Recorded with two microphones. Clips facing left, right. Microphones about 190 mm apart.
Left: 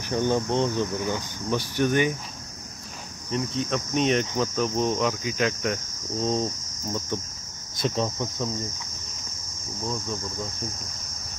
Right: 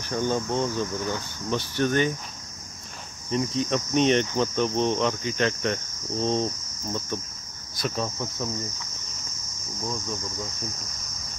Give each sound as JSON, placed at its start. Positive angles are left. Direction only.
{"t": 0.1, "sound": "speech", "side_deg": 20}
{"t": 3.3, "sound": "cricket", "side_deg": 0}
{"t": 7.7, "sound": "speech", "side_deg": 25}